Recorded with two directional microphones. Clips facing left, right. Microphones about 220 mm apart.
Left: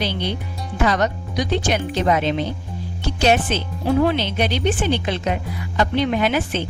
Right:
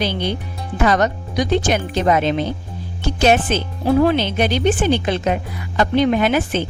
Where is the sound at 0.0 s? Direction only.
50° right (ahead or behind).